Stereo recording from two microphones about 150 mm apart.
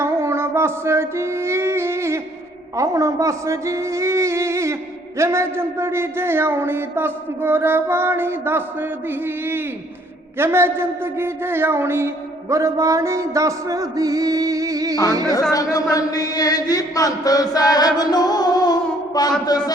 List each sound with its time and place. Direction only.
0.0 s music: 15° right (ahead or behind)
2.7 s speech: 20° right (ahead or behind)
15.3 s a sound: 25° left (ahead or behind)